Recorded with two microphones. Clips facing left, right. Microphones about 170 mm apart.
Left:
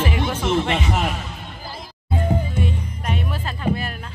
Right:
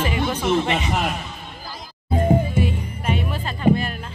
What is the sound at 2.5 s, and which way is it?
Music, 5° right (ahead or behind).